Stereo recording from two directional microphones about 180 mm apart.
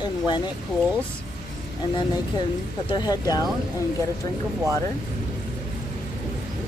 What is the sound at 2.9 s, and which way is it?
Speech, 20° left (ahead or behind).